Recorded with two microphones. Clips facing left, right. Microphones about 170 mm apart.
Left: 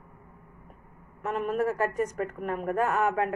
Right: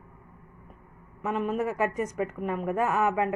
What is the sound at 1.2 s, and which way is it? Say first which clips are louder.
A woman's voice: even; 5° right (ahead or behind).